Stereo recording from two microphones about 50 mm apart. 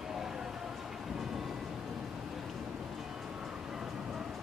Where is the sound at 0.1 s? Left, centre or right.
Centre.